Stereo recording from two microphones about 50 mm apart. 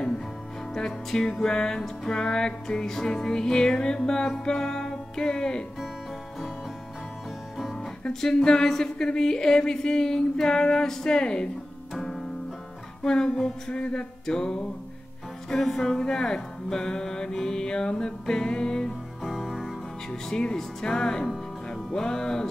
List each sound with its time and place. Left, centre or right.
0.7 s music: centre
7.5 s music: centre
11.9 s music: centre
20.1 s music: centre